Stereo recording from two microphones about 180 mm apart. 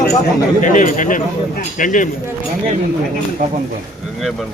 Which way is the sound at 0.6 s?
45° left (ahead or behind).